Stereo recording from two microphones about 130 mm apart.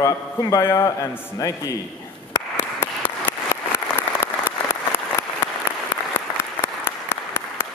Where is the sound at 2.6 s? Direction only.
15° left (ahead or behind).